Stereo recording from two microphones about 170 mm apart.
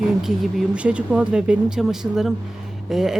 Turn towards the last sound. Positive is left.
turn(degrees=0)  # may be behind; listen again after turning